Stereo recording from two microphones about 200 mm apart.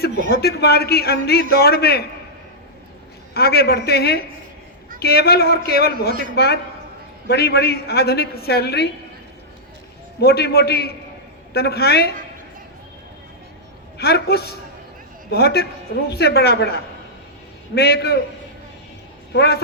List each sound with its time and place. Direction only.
0.3 s a man's voice: 50° left (ahead or behind)
3.3 s a man's voice: 50° left (ahead or behind)
10.2 s a man's voice: 55° left (ahead or behind)
14.0 s a man's voice: 55° left (ahead or behind)
19.3 s a man's voice: 55° left (ahead or behind)